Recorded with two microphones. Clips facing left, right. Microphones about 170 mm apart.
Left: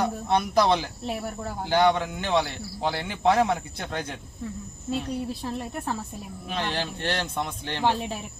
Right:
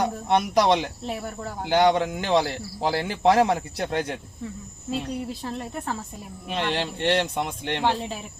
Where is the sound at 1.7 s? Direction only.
25° right (ahead or behind).